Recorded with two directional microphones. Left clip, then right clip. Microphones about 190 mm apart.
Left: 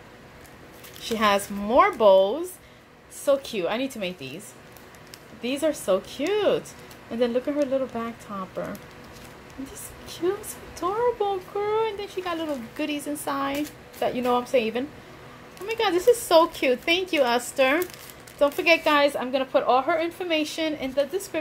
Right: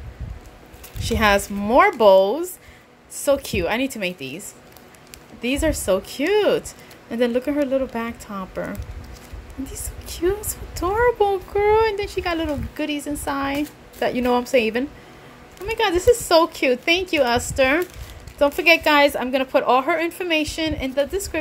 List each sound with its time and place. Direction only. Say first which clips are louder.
1.0 s a woman's voice: right 4 dB; 20° right (ahead or behind)
5.4 s a woman's voice: right 4 dB; 25° right (ahead or behind)
10.0 s a sound: right 4 dB; 25° right (ahead or behind)
10.8 s speech: right 6 dB; 35° right (ahead or behind)
12.7 s a woman's voice: right 3 dB; 20° right (ahead or behind)